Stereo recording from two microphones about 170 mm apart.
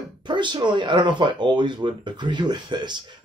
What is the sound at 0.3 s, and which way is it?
Speech, 25° right (ahead or behind).